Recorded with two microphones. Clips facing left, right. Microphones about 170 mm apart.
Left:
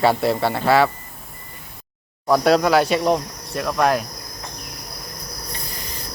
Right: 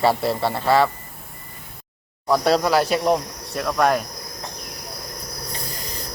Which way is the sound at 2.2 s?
Centre (ahead or behind).